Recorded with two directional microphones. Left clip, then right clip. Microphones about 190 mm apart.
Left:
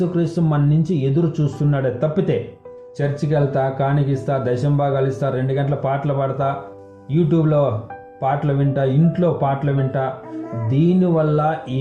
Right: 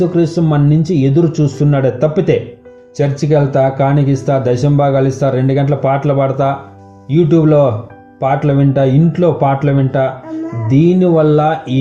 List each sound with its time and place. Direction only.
0.2 s speech: 35° right (ahead or behind)